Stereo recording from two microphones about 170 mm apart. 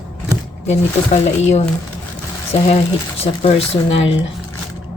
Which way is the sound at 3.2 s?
35° left (ahead or behind).